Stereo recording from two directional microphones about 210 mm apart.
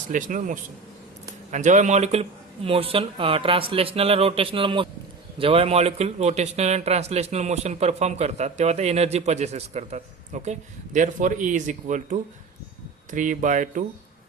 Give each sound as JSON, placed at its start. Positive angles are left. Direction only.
{"t": 0.1, "sound": "a man's voice", "side_deg": -40}